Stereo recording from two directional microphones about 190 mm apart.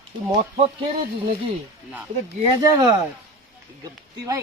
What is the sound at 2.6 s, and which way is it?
Speech, 20° right (ahead or behind).